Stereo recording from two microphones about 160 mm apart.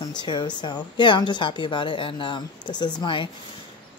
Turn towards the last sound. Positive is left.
turn(degrees=30)  # may be behind; listen again after turning